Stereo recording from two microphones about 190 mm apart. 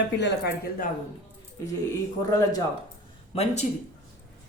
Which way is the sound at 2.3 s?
20° left (ahead or behind).